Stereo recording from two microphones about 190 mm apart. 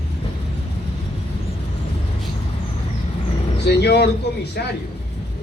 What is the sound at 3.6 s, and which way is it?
A man's voice, 60° left (ahead or behind).